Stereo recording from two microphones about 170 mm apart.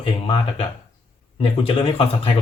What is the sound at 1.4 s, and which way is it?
Speech, 35° left (ahead or behind).